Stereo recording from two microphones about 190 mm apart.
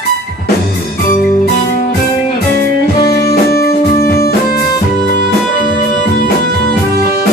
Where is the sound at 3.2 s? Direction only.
55° left (ahead or behind).